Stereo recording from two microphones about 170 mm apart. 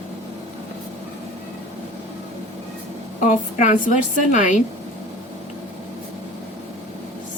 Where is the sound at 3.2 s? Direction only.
45° left (ahead or behind).